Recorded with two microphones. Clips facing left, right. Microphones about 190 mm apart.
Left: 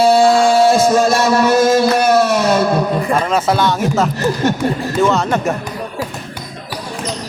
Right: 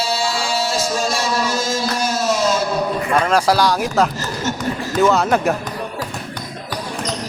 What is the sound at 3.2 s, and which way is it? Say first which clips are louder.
Speech: left 1 dB; centre (ahead or behind).